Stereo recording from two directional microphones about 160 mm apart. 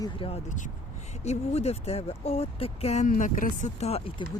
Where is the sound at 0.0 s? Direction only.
35° left (ahead or behind).